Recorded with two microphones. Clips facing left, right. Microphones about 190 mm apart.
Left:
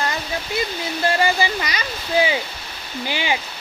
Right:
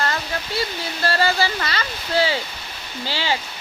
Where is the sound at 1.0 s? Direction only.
15° left (ahead or behind).